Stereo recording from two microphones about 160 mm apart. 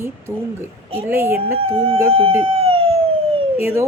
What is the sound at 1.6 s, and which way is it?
Speech, 35° right (ahead or behind).